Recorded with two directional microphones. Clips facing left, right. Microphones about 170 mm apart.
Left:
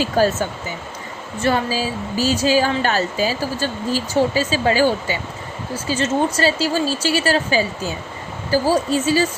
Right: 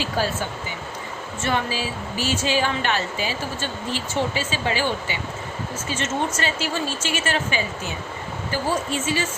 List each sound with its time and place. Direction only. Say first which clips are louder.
0.0 s speech: left 7 dB; 45° left (ahead or behind)